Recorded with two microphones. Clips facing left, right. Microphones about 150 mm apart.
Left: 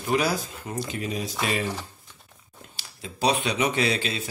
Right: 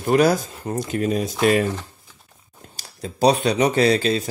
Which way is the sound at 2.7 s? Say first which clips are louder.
Right 9 dB; 40° right (ahead or behind).